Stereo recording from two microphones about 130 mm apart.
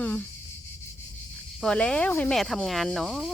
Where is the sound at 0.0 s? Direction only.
10° left (ahead or behind).